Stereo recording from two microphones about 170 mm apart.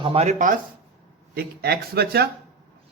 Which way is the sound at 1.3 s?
70° right (ahead or behind).